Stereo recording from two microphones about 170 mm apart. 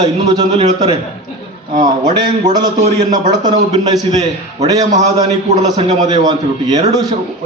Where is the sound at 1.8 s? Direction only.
25° right (ahead or behind).